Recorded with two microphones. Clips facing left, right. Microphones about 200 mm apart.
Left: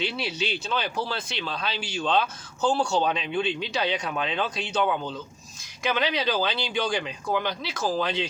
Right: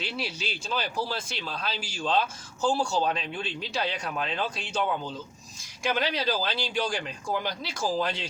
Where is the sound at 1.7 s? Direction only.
65° left (ahead or behind).